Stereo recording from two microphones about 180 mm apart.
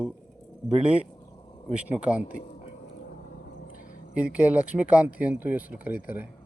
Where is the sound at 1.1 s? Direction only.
20° left (ahead or behind).